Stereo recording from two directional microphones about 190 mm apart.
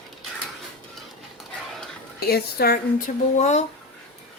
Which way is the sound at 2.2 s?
55° left (ahead or behind).